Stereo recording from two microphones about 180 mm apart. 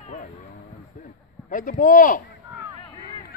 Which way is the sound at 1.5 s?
45° left (ahead or behind).